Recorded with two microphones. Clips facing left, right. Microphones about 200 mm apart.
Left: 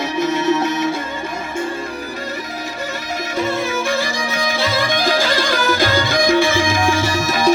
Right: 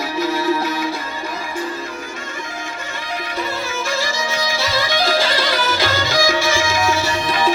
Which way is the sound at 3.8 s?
55° left (ahead or behind).